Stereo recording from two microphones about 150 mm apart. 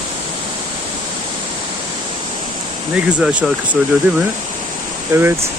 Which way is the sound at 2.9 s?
10° right (ahead or behind).